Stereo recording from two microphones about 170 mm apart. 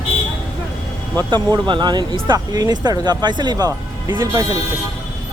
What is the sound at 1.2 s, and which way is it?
Speech, 25° right (ahead or behind).